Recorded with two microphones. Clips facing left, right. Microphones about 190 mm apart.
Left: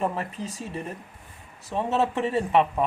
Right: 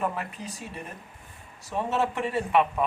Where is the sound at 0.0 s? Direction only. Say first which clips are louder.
Left 3 dB; 35° left (ahead or behind).